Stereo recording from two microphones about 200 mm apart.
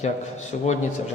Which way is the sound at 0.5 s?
40° left (ahead or behind).